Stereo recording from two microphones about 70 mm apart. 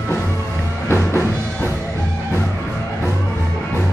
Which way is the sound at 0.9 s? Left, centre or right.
Left.